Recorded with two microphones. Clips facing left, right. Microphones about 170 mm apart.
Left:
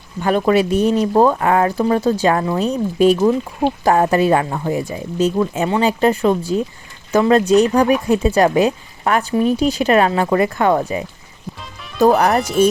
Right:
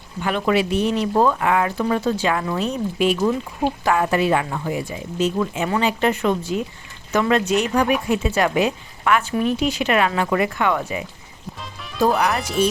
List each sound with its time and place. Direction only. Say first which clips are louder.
0.2 s speech: left 5 dB; 40° left (ahead or behind)